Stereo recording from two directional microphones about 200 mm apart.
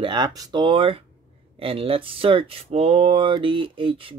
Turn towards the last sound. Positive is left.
turn(degrees=-25)  # may be behind; listen again after turning